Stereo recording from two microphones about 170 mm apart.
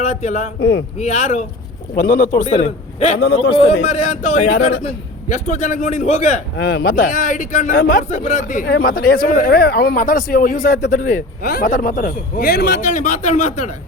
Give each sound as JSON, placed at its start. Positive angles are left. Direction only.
{"t": 0.1, "sound": "a man's voice", "side_deg": 45}
{"t": 0.6, "sound": "a man's voice", "side_deg": 70}
{"t": 0.9, "sound": "speech", "side_deg": 40}
{"t": 2.0, "sound": "a man's voice", "side_deg": 50}
{"t": 3.2, "sound": "a man's voice", "side_deg": 70}
{"t": 3.8, "sound": "a man's voice", "side_deg": 45}
{"t": 6.6, "sound": "a man's voice", "side_deg": 70}
{"t": 7.8, "sound": "speech", "side_deg": 60}
{"t": 8.1, "sound": "speech", "side_deg": 40}
{"t": 12.8, "sound": "a man's voice", "side_deg": 45}